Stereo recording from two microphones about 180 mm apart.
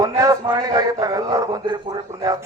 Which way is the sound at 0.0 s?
20° right (ahead or behind).